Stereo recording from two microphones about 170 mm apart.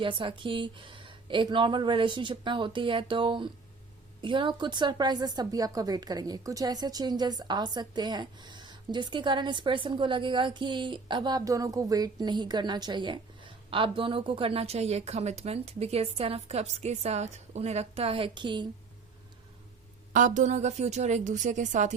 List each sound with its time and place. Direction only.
0.0 s speech: 30° right (ahead or behind)
20.1 s a woman's voice: 50° right (ahead or behind)